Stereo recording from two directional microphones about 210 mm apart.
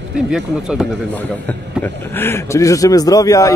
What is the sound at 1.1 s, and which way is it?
A man's voice, 10° left (ahead or behind).